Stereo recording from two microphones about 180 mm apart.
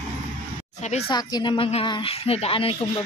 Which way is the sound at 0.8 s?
40° left (ahead or behind).